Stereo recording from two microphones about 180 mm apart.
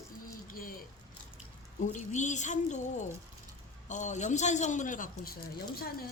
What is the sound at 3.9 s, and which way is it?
A man's voice, 40° left (ahead or behind).